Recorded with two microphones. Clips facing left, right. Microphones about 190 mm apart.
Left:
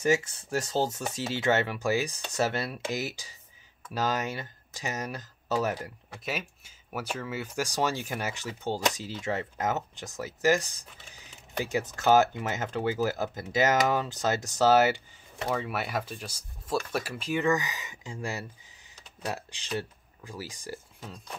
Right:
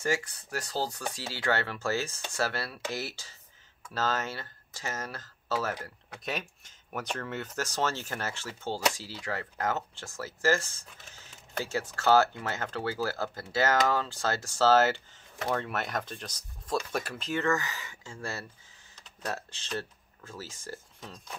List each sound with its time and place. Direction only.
0.0 s speech: 20° left (ahead or behind)
15.4 s speech: 5° left (ahead or behind)